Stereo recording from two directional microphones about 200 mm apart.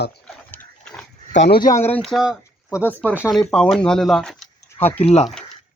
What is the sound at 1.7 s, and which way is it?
Speech, 10° left (ahead or behind).